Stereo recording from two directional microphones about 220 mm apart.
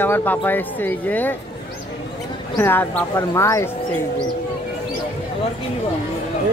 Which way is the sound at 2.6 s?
10° left (ahead or behind).